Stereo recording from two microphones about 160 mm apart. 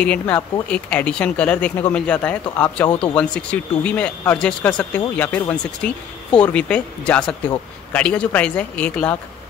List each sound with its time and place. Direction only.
0.0 s speech: 10° left (ahead or behind)
2.9 s speech: 30° left (ahead or behind)
3.2 s speech: 5° left (ahead or behind)